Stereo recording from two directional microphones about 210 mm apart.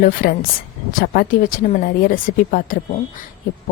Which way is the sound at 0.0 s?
40° left (ahead or behind).